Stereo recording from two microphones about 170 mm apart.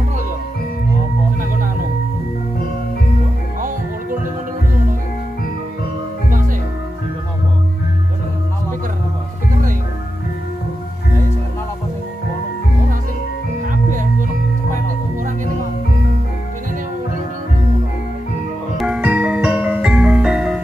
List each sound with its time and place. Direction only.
13.7 s music: 50° right (ahead or behind)
18.8 s music: 5° right (ahead or behind)